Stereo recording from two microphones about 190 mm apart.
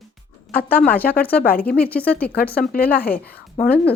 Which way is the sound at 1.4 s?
50° left (ahead or behind).